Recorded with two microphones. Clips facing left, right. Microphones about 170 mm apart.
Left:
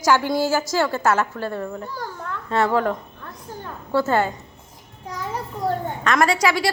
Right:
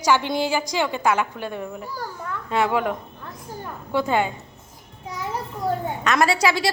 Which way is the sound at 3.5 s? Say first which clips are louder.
Left 2 dB; 15° right (ahead or behind).